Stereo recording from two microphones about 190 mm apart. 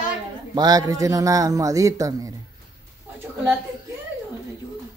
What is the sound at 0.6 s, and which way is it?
Speech, 20° right (ahead or behind).